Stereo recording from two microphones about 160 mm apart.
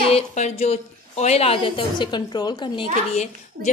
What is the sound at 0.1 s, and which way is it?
A child's voice, 45° left (ahead or behind).